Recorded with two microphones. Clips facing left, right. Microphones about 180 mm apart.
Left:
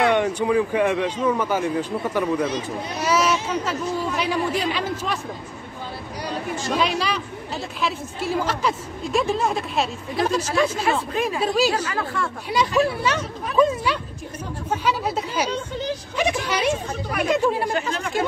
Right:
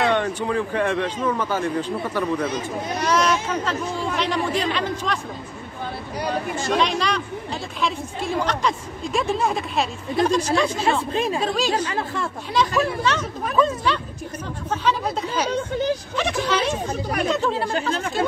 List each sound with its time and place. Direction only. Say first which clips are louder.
0.0 s a man's voice: left 2 dB; 15° left (ahead or behind)
3.0 s a sound: even; 5° left (ahead or behind)
4.2 s a man's voice: right 2 dB; 10° left (ahead or behind)
6.7 s a woman's voice: right 1 dB; 5° left (ahead or behind)
10.9 s speech: right 1 dB; 25° right (ahead or behind)
11.4 s a man's voice: left 3 dB; 10° left (ahead or behind)
11.8 s speech: even; 25° right (ahead or behind)
12.5 s a man's voice: left 1 dB; 10° left (ahead or behind)